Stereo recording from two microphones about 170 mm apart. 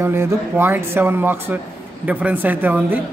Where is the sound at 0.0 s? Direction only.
15° right (ahead or behind).